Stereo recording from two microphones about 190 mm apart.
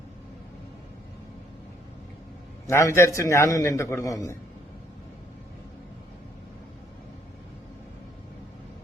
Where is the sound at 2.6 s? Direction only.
15° left (ahead or behind).